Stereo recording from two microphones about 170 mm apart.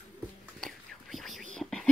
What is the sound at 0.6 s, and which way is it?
Whispering, centre (ahead or behind).